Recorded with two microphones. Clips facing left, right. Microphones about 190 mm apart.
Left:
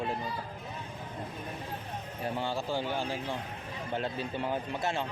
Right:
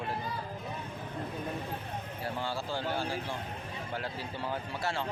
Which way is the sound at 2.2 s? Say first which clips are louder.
Left 3 dB; 20° left (ahead or behind).